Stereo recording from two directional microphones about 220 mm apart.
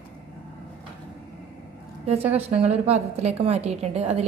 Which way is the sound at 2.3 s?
25° right (ahead or behind).